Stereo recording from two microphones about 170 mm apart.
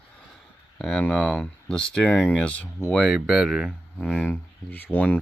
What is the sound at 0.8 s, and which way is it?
Speech, 5° left (ahead or behind).